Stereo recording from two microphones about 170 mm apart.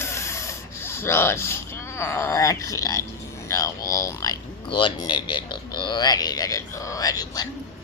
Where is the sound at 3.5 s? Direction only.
20° left (ahead or behind).